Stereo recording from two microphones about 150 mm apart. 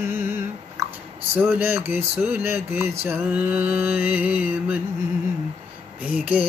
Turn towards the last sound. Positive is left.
turn(degrees=-10)  # may be behind; listen again after turning